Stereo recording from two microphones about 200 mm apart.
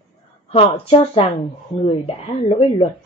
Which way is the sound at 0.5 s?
30° left (ahead or behind).